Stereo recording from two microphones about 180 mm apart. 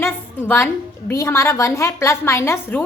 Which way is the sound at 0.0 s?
10° left (ahead or behind).